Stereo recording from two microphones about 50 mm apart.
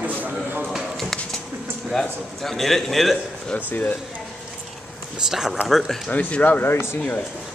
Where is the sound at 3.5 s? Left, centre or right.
Left.